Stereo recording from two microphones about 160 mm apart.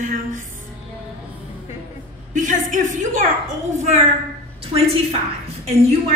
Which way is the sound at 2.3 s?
55° right (ahead or behind).